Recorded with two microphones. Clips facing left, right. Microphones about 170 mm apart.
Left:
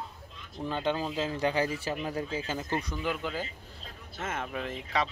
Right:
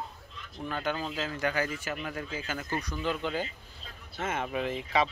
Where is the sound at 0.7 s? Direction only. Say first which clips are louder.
Left 2 dB; 25° left (ahead or behind).